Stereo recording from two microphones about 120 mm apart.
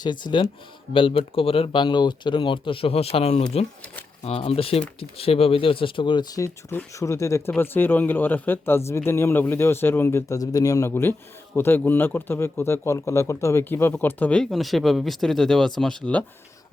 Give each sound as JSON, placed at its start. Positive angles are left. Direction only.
{"t": 0.0, "sound": "speech", "side_deg": 40}